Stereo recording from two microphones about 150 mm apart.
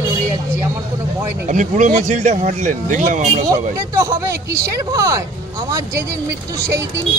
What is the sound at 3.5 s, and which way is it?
Speech, 20° right (ahead or behind).